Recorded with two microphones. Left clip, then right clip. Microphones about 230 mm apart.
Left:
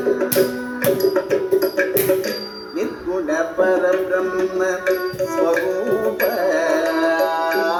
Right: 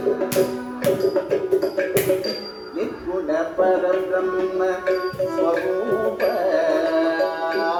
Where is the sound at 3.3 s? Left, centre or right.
Left.